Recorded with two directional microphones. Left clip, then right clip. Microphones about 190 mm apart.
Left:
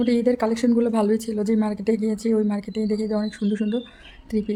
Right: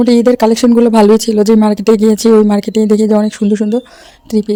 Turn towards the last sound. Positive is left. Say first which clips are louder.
# right 11 dB
turn(degrees=-45)  # may be behind; listen again after turning